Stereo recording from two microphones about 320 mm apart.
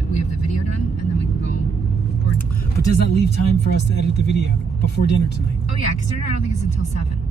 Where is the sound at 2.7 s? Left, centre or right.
Left.